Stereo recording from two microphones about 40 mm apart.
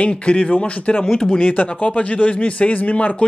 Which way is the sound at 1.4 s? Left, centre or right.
Left.